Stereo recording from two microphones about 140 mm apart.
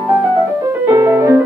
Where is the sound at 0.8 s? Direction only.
25° right (ahead or behind).